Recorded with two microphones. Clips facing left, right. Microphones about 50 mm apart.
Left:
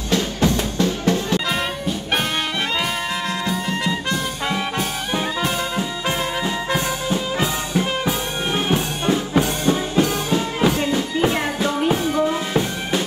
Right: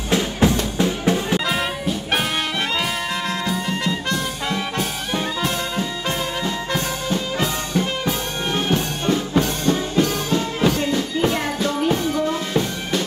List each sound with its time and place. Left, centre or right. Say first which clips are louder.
0.1 s music: right 1 dB; centre
1.4 s music: right 1 dB; centre
2.7 s music: even; centre